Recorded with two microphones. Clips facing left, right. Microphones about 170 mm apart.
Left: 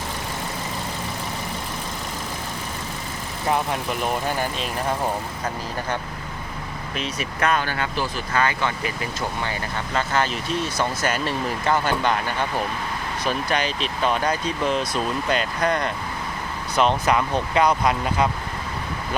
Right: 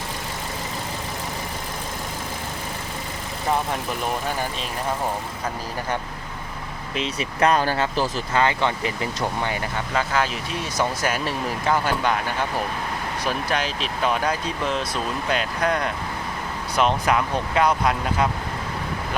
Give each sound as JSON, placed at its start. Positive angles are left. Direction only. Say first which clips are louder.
{"t": 6.9, "sound": "speech", "louder": "right 2 dB", "side_deg": -25}
{"t": 8.3, "sound": "speech", "louder": "right 1 dB", "side_deg": -25}
{"t": 9.9, "sound": "speech", "louder": "left 1 dB", "side_deg": -5}
{"t": 13.2, "sound": "speech", "louder": "left 2 dB", "side_deg": 0}